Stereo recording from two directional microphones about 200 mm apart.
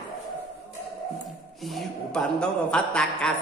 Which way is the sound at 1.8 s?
5° left (ahead or behind).